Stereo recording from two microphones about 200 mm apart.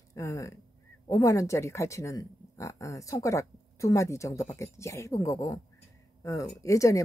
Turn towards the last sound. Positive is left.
turn(degrees=15)  # may be behind; listen again after turning